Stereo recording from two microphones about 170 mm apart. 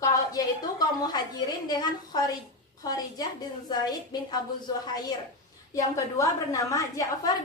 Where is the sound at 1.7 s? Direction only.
25° left (ahead or behind).